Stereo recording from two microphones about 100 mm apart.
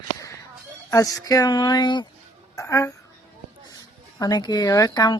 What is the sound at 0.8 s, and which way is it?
Speech, 35° left (ahead or behind).